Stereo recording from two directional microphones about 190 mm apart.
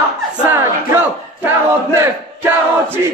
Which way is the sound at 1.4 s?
15° right (ahead or behind).